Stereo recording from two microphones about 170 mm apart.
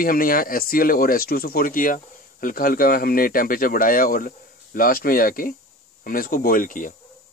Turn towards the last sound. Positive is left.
turn(degrees=50)  # may be behind; listen again after turning